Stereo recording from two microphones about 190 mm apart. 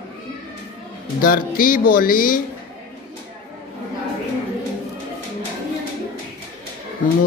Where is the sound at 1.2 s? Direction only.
50° left (ahead or behind).